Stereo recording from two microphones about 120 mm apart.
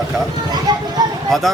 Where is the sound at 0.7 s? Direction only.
35° right (ahead or behind).